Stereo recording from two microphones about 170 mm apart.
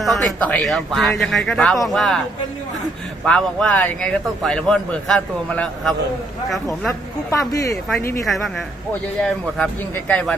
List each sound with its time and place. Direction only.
0.0 s a man's voice: centre (ahead or behind)
3.3 s a man's voice: 5° left (ahead or behind)
7.2 s speech: 20° left (ahead or behind)
9.2 s a man's voice: 5° left (ahead or behind)